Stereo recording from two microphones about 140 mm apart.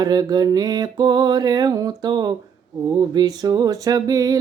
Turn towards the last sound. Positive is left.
turn(degrees=-25)  # may be behind; listen again after turning